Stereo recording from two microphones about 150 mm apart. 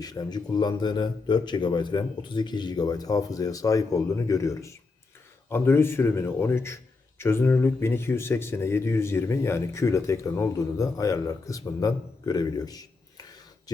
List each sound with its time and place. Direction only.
0.0 s speech: 25° left (ahead or behind)